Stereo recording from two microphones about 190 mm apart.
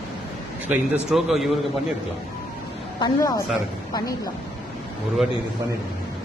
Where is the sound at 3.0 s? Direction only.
25° left (ahead or behind).